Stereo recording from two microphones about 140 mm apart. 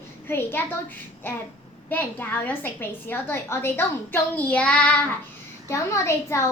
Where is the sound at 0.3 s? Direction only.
15° left (ahead or behind).